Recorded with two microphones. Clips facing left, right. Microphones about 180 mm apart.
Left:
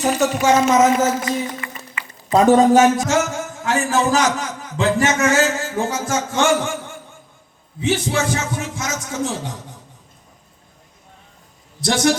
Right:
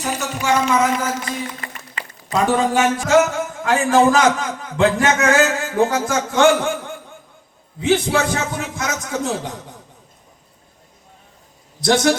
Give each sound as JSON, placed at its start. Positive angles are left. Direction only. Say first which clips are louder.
{"t": 0.0, "sound": "speech", "louder": "left 6 dB", "side_deg": 40}
{"t": 1.2, "sound": "music", "louder": "left 4 dB", "side_deg": -35}
{"t": 2.3, "sound": "speech", "louder": "left 6 dB", "side_deg": 40}
{"t": 3.1, "sound": "a man's voice", "louder": "right 5 dB", "side_deg": -60}
{"t": 7.8, "sound": "a man's voice", "louder": "right 3 dB", "side_deg": -60}